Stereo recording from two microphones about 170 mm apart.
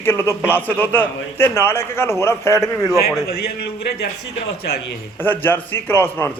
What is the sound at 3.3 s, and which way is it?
Speech, 65° left (ahead or behind).